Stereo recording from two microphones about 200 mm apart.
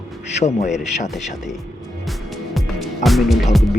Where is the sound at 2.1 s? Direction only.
Centre (ahead or behind).